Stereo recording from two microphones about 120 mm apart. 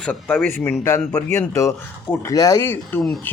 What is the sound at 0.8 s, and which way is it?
A man's voice, 25° left (ahead or behind).